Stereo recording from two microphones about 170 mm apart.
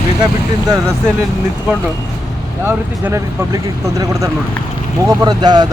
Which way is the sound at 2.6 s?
15° right (ahead or behind).